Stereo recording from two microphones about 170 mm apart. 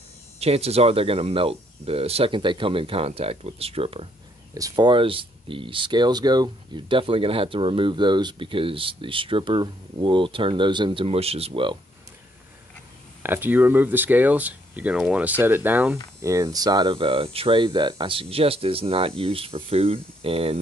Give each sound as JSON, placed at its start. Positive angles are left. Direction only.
{"t": 0.4, "sound": "speech", "side_deg": -35}
{"t": 4.6, "sound": "speech", "side_deg": -25}
{"t": 13.2, "sound": "speech", "side_deg": -10}